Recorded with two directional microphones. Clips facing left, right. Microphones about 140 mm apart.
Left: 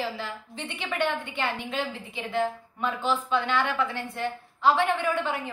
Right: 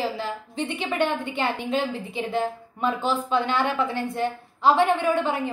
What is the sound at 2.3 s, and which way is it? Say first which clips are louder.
A woman's voice: left 1 dB; 40° right (ahead or behind).